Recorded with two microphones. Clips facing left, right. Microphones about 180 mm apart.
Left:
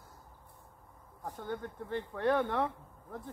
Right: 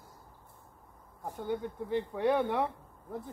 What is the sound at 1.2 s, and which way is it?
Speech, 15° right (ahead or behind).